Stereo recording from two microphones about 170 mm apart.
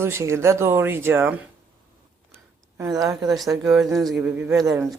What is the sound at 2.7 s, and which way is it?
Speech, 20° right (ahead or behind).